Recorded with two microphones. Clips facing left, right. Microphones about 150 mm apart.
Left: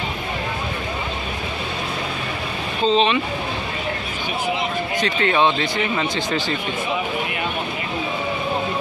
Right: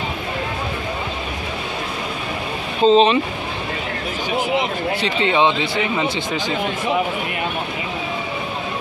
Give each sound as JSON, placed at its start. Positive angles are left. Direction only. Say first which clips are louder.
{"t": 2.8, "sound": "speech", "louder": "right 5 dB", "side_deg": -40}
{"t": 5.0, "sound": "speech", "louder": "right 1 dB", "side_deg": -20}